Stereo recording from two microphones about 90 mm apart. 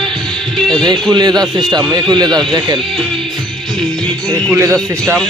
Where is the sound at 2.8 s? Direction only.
Centre (ahead or behind).